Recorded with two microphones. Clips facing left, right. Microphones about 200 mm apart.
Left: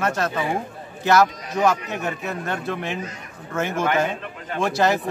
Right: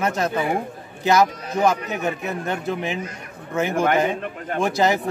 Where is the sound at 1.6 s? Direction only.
15° right (ahead or behind).